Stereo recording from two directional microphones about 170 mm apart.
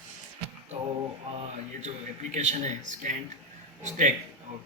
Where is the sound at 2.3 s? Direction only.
45° right (ahead or behind).